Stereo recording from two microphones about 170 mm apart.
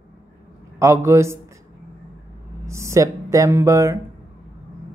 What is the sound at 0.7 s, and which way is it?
Speech, 15° right (ahead or behind).